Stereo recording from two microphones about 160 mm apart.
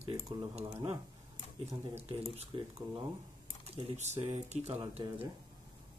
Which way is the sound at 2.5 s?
30° right (ahead or behind).